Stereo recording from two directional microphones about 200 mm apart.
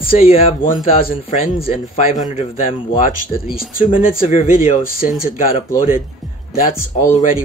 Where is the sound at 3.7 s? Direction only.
25° left (ahead or behind).